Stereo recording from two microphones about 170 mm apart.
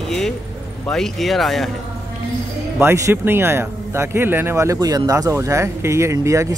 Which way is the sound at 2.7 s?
15° right (ahead or behind).